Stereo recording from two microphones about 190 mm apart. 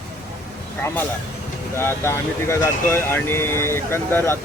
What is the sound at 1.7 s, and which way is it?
Speech, 10° left (ahead or behind).